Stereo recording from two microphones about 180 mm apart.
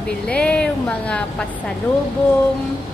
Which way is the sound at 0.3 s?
5° left (ahead or behind).